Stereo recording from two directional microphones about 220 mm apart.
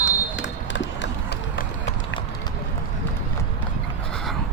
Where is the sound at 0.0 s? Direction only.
55° left (ahead or behind).